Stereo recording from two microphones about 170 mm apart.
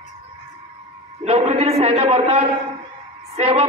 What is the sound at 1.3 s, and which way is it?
A man's voice, 40° right (ahead or behind).